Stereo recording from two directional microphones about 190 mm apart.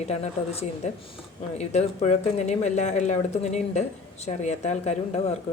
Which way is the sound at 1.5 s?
35° left (ahead or behind).